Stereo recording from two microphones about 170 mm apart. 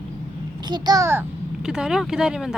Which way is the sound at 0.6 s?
25° right (ahead or behind).